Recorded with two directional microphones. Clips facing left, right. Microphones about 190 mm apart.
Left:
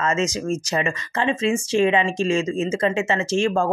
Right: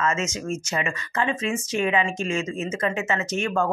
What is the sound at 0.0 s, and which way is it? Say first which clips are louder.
Speech: left 3 dB; 35° left (ahead or behind).